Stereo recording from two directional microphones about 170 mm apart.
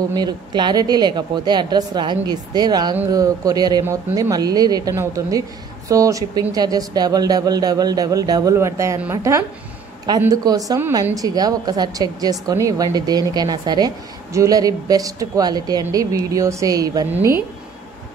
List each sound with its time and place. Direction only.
0.1 s a woman's voice: 25° right (ahead or behind)